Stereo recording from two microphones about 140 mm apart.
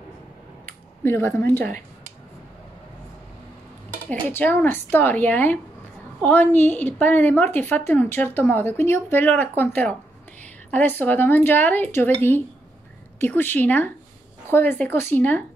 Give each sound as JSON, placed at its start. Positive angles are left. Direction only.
{"t": 1.0, "sound": "a woman's voice", "side_deg": 15}
{"t": 4.1, "sound": "a woman's voice", "side_deg": 15}